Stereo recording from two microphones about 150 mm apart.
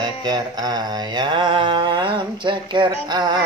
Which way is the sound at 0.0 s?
25° right (ahead or behind).